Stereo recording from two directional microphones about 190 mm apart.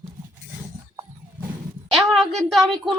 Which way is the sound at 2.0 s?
Centre (ahead or behind).